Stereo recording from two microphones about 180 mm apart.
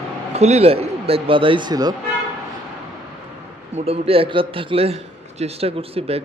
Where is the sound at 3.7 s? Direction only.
35° right (ahead or behind).